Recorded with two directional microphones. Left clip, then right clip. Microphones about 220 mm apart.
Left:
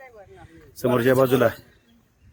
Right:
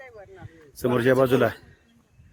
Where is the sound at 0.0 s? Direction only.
40° right (ahead or behind).